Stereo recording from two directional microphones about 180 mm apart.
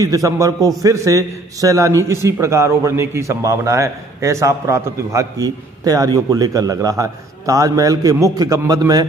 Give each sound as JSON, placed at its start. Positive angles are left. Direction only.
{"t": 0.0, "sound": "a man's voice", "side_deg": -20}